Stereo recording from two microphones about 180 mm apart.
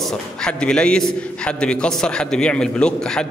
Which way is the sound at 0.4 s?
5° left (ahead or behind).